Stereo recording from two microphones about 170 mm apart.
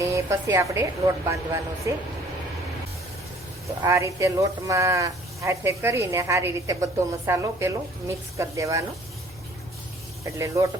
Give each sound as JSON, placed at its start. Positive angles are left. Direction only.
{"t": 0.0, "sound": "speech", "side_deg": -15}
{"t": 3.8, "sound": "speech", "side_deg": -15}
{"t": 10.2, "sound": "speech", "side_deg": -20}